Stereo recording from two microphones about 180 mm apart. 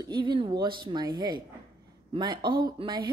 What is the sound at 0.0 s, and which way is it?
Speech, 25° right (ahead or behind).